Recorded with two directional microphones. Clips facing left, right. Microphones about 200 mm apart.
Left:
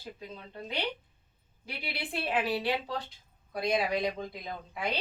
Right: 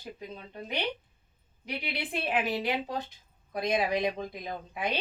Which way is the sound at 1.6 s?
20° right (ahead or behind).